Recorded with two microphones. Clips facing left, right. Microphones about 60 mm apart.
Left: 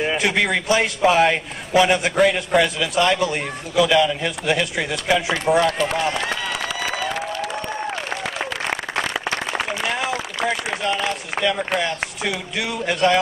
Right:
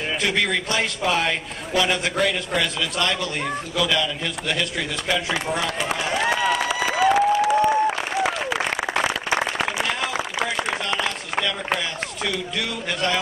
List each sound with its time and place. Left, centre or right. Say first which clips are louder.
0.0 s a man's voice: left 3 dB; centre
5.6 s applause: left 6 dB; centre
9.6 s a sound: even; centre
11.8 s a man's voice: left 3 dB; centre